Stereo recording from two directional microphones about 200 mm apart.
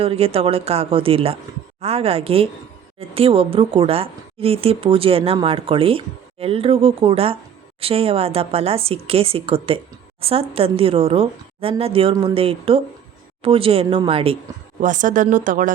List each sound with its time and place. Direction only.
0.0 s a woman's voice: 30° right (ahead or behind)
14.8 s speech: 40° right (ahead or behind)